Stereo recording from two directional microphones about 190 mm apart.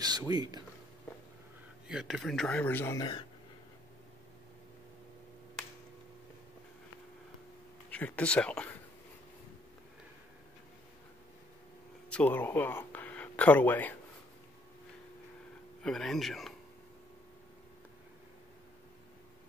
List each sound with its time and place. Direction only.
0.0 s speech: 20° right (ahead or behind)
1.9 s speech: centre (ahead or behind); by 3.3 s 20° left (ahead or behind)
7.9 s speech: 5° left (ahead or behind)
12.1 s speech: 10° left (ahead or behind)
15.8 s speech: centre (ahead or behind)